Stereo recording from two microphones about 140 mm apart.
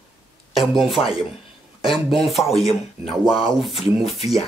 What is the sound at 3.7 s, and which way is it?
Speech, 45° left (ahead or behind).